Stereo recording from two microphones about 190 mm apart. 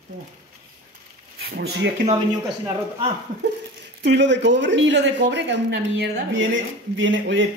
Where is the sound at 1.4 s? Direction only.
60° right (ahead or behind).